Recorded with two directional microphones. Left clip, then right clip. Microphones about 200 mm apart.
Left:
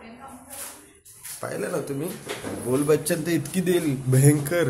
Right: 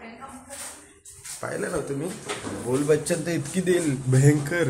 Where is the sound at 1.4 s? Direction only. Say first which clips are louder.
Even; 10° left (ahead or behind).